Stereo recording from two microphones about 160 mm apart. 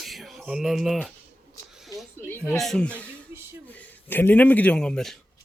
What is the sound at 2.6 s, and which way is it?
Speech, 5° left (ahead or behind).